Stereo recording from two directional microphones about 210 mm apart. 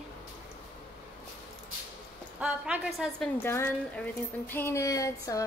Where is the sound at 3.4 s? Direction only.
10° left (ahead or behind).